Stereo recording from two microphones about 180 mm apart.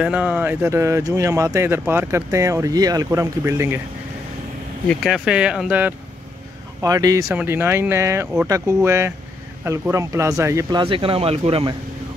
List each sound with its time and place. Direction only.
0.0 s speech: 10° right (ahead or behind)
4.8 s speech: centre (ahead or behind)
6.8 s speech: 20° right (ahead or behind)